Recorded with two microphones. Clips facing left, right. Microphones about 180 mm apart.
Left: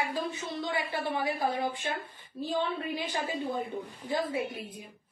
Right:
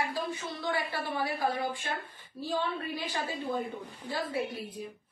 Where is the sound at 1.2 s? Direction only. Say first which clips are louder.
Right 1 dB; 20° left (ahead or behind).